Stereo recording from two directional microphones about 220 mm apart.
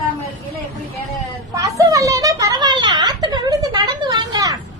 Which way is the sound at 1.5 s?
15° right (ahead or behind).